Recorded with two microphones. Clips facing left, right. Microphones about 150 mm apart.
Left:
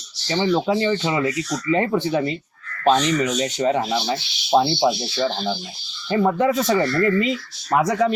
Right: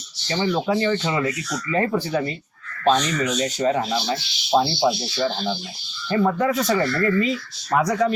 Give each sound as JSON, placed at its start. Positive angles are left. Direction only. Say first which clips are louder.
{"t": 0.3, "sound": "speech", "louder": "left 2 dB", "side_deg": 20}
{"t": 6.1, "sound": "speech", "louder": "left 2 dB", "side_deg": 20}